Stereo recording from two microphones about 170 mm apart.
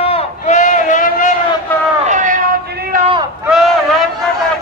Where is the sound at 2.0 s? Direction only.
50° right (ahead or behind).